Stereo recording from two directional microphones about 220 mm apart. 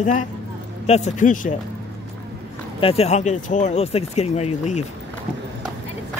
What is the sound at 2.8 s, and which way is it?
Speech, 25° left (ahead or behind).